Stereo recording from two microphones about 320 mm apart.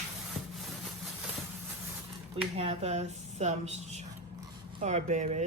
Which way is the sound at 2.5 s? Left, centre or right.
Centre.